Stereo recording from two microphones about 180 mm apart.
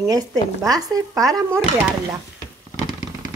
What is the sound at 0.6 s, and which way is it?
Speech, 20° right (ahead or behind).